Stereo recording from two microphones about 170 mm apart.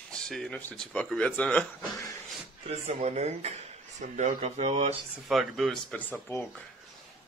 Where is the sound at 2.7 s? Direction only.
40° right (ahead or behind).